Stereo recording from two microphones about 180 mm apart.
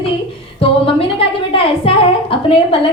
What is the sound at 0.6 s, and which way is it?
A woman's voice, 30° left (ahead or behind).